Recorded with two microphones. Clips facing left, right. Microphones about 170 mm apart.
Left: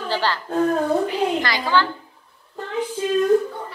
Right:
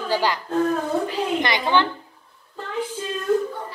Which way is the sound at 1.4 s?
20° right (ahead or behind).